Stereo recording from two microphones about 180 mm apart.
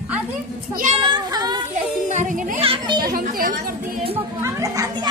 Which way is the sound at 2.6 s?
25° right (ahead or behind).